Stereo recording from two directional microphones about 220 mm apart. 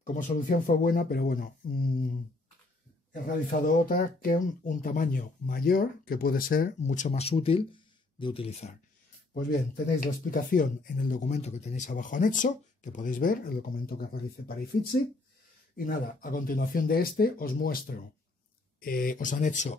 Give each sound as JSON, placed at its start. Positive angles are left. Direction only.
{"t": 0.0, "sound": "speech", "side_deg": 40}
{"t": 3.1, "sound": "speech", "side_deg": 40}
{"t": 9.3, "sound": "speech", "side_deg": 40}